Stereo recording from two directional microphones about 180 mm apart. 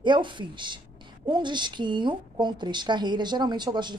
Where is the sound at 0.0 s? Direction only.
25° right (ahead or behind).